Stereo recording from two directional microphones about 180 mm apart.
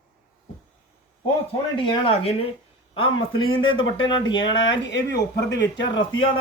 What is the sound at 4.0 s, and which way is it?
Speech, 25° left (ahead or behind).